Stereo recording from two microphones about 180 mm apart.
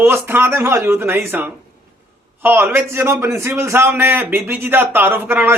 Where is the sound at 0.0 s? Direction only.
15° right (ahead or behind).